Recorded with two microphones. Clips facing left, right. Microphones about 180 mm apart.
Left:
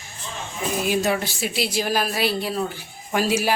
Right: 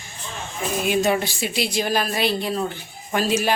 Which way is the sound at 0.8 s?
Centre (ahead or behind).